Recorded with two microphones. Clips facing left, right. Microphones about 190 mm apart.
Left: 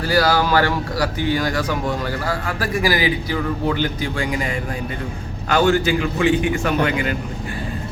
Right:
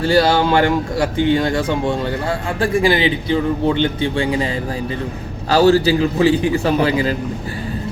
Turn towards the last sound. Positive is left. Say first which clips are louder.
# right 4 dB
turn(degrees=-30)  # may be behind; listen again after turning